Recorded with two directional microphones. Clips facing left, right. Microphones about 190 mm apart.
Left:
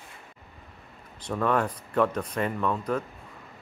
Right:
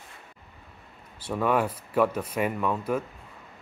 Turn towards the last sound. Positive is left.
turn(degrees=-10)  # may be behind; listen again after turning